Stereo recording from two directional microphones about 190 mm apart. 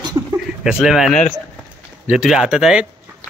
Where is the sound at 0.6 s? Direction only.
Centre (ahead or behind).